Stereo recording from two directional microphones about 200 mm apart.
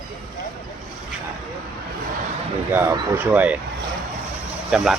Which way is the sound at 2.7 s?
10° right (ahead or behind).